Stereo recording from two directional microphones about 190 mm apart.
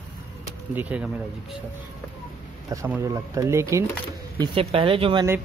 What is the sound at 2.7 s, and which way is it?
Speech, 15° right (ahead or behind).